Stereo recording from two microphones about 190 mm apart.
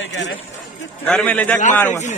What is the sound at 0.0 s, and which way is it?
Speech, 70° left (ahead or behind).